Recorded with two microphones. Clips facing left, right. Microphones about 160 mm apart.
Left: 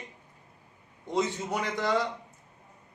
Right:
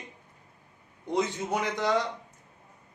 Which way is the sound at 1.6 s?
20° right (ahead or behind).